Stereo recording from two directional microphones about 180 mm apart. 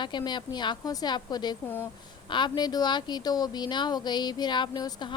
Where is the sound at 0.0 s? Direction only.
25° left (ahead or behind).